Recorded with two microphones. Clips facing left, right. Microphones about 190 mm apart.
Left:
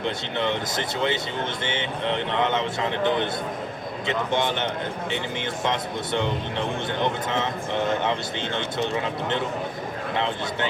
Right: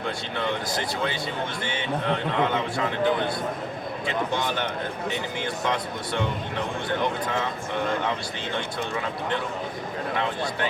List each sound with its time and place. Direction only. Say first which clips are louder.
0.0 s a man's voice: left 2 dB; 25° left (ahead or behind)
7.9 s a man's voice: left 2 dB; 25° left (ahead or behind)
10.2 s a man's voice: left 2 dB; 25° left (ahead or behind)